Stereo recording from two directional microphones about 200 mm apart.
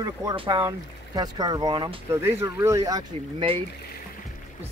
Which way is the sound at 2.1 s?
15° right (ahead or behind).